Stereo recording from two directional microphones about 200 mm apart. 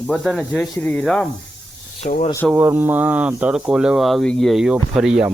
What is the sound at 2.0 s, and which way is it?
Speech, 40° left (ahead or behind).